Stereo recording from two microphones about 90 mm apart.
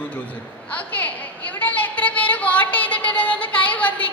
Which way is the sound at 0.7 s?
15° left (ahead or behind).